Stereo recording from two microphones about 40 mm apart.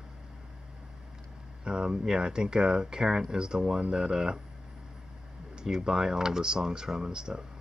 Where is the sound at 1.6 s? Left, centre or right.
Right.